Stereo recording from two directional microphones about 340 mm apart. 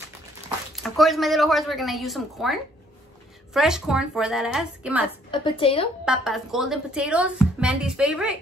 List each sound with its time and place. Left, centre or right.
0.8 s a woman's voice: centre
3.5 s a woman's voice: centre
5.3 s speech: centre
6.0 s a woman's voice: centre